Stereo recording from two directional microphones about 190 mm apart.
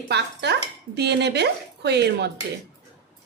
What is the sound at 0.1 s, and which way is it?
Speech, 60° right (ahead or behind).